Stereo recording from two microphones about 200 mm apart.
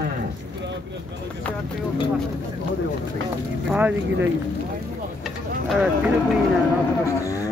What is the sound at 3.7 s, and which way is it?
Speech, 5° right (ahead or behind).